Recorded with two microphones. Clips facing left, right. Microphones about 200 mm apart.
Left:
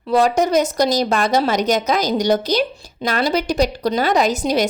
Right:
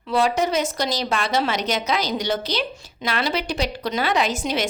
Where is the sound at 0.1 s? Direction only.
45° left (ahead or behind).